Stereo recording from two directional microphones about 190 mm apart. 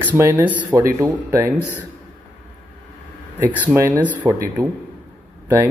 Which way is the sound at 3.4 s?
10° right (ahead or behind).